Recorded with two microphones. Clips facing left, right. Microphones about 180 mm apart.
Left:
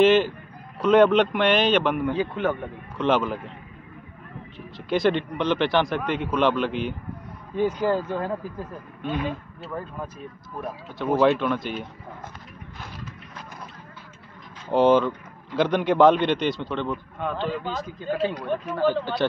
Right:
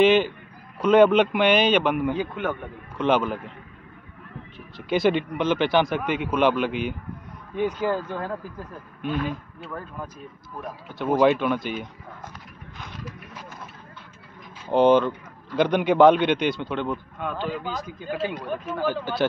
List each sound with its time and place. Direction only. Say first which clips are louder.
0.0 s speech: even; centre (ahead or behind)
4.7 s speech: right 1 dB; centre (ahead or behind)
14.7 s speech: right 1 dB; 5° left (ahead or behind)